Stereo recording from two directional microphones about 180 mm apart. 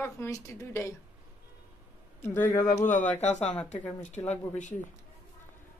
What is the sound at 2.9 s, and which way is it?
Speech, 40° left (ahead or behind).